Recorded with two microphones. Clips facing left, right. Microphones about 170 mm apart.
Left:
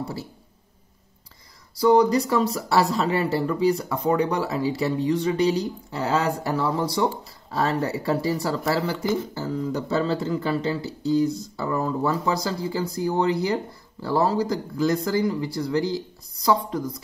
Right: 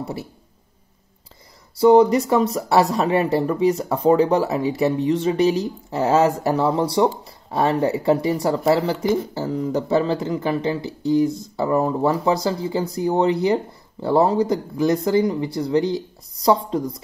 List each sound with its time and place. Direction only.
0.0 s speech: 20° right (ahead or behind)
1.8 s speech: 25° right (ahead or behind)